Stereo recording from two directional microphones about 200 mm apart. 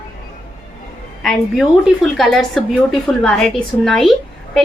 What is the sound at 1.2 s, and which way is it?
A woman's voice, centre (ahead or behind).